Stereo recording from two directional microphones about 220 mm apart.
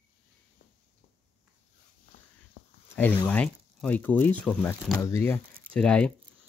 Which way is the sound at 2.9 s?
5° left (ahead or behind).